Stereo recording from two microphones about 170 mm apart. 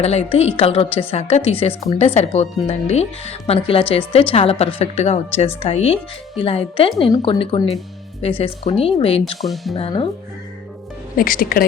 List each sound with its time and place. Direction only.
0.0 s speech: 40° left (ahead or behind)
9.4 s speech: centre (ahead or behind)
9.7 s speech: 30° left (ahead or behind)
11.2 s speech: 55° left (ahead or behind)